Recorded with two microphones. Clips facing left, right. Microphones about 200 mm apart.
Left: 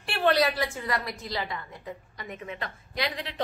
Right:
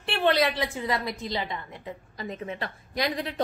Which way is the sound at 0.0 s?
20° right (ahead or behind).